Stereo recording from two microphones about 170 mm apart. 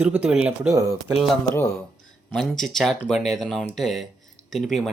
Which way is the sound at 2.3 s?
Centre (ahead or behind).